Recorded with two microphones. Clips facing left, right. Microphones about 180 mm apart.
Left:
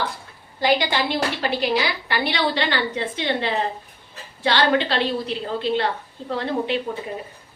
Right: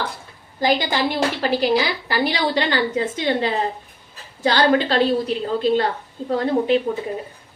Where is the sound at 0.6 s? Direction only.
45° right (ahead or behind).